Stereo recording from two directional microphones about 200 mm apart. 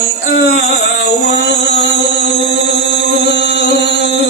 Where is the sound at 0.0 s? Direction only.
50° left (ahead or behind).